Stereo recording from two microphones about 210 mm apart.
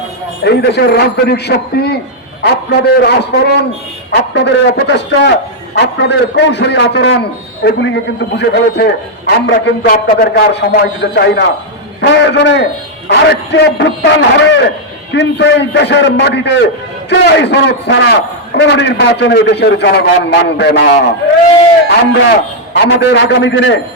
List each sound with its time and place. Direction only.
0.4 s a man's voice: 50° left (ahead or behind)
22.3 s a man's voice: 55° left (ahead or behind)